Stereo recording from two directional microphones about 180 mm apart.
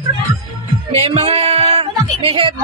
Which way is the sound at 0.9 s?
35° right (ahead or behind).